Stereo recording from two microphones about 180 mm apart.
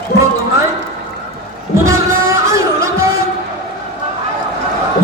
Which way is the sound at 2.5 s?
15° right (ahead or behind).